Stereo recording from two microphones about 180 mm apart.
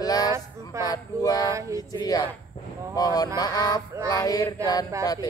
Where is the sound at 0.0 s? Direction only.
20° left (ahead or behind).